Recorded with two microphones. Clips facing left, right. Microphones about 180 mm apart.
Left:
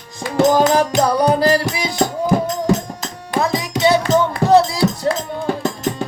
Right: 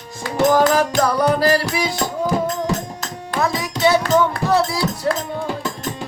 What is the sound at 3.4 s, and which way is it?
Music, 20° left (ahead or behind).